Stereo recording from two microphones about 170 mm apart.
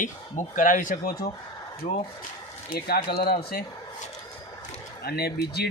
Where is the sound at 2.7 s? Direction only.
65° left (ahead or behind).